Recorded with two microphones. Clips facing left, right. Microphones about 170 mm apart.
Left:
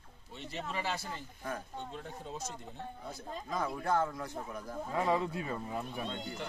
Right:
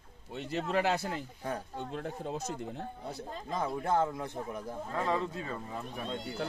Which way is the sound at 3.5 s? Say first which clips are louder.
Right 2 dB; 25° right (ahead or behind).